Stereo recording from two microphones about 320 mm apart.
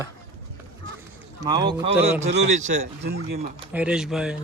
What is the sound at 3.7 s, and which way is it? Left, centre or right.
Speech, centre.